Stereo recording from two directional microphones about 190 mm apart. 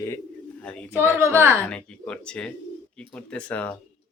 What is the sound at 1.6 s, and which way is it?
Speech, 5° left (ahead or behind).